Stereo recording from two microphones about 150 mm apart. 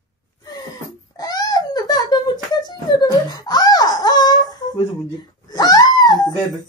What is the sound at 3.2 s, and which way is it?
Crying, 25° left (ahead or behind).